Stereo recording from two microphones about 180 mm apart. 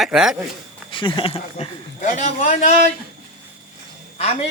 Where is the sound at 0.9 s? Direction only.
25° left (ahead or behind); by 2.7 s 45° left (ahead or behind).